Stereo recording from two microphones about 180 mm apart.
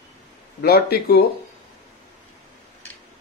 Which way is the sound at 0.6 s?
60° left (ahead or behind).